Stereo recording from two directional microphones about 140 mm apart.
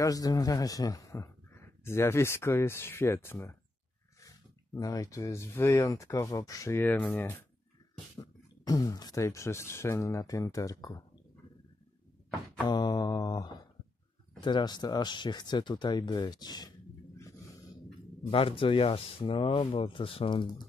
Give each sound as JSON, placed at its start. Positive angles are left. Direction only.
{"t": 0.0, "sound": "a man's voice", "side_deg": 25}
{"t": 4.7, "sound": "a man's voice", "side_deg": 25}
{"t": 8.2, "sound": "a man's voice", "side_deg": 25}
{"t": 12.6, "sound": "a man's voice", "side_deg": 30}
{"t": 18.2, "sound": "speech", "side_deg": 40}